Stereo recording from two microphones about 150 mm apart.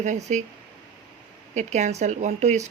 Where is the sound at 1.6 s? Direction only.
50° right (ahead or behind).